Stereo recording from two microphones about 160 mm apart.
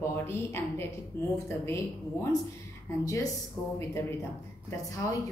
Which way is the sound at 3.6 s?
Centre (ahead or behind).